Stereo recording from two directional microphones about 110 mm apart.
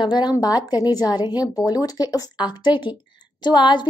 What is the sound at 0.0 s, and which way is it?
A woman's voice, 40° left (ahead or behind).